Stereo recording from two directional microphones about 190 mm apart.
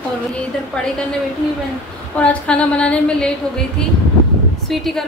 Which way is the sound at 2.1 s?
5° left (ahead or behind).